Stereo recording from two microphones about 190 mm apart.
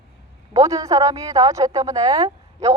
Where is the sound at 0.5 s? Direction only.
20° right (ahead or behind).